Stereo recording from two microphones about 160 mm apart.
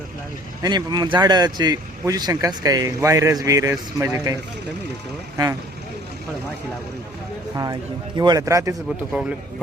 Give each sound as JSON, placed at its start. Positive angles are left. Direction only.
{"t": 0.6, "sound": "speech", "side_deg": -25}
{"t": 7.5, "sound": "speech", "side_deg": -25}